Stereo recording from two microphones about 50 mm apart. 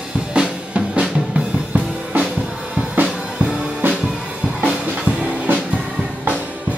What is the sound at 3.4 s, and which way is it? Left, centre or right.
Music, right.